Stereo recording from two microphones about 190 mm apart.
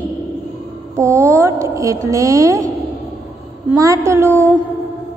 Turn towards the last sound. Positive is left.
turn(degrees=-15)  # may be behind; listen again after turning